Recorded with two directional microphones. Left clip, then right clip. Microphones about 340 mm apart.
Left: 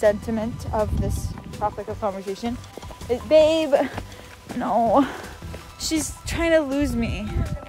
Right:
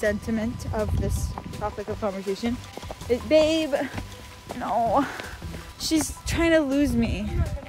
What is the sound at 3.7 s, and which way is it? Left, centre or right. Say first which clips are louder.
Speech: left 6 dB; left.